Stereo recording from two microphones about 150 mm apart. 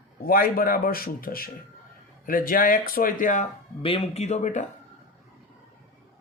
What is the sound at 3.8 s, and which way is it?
Speech, 40° left (ahead or behind).